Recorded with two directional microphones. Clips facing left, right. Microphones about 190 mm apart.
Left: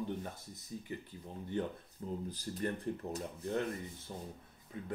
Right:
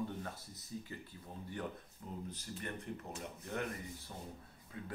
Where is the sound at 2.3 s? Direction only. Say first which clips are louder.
Left 7 dB; 35° left (ahead or behind).